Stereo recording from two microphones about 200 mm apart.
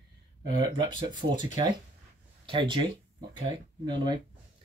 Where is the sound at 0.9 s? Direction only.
25° right (ahead or behind).